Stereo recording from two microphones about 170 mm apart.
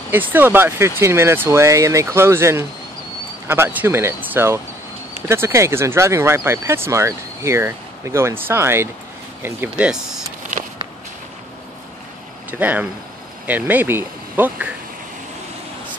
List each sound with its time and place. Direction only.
0.1 s speech: 10° right (ahead or behind)
12.4 s speech: 10° right (ahead or behind)